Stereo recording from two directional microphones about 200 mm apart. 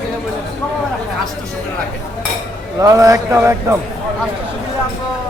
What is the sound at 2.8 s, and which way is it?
Speech, 15° right (ahead or behind).